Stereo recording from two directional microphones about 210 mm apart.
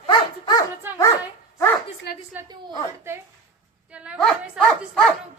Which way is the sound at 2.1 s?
50° left (ahead or behind).